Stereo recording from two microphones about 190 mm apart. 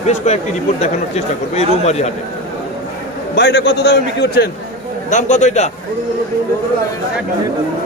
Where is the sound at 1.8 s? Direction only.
35° left (ahead or behind).